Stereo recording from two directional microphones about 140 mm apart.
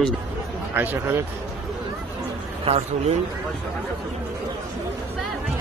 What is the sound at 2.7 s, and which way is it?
Speech, 45° right (ahead or behind).